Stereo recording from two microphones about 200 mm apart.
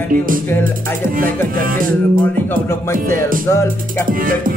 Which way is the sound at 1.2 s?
45° right (ahead or behind).